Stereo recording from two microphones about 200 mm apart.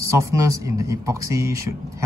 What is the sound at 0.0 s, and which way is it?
Speech, 15° right (ahead or behind).